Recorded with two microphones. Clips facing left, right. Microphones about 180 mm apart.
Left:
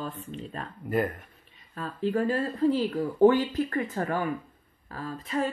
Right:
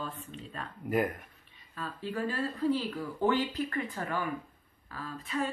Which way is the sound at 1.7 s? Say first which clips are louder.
Left 8 dB; 45° left (ahead or behind).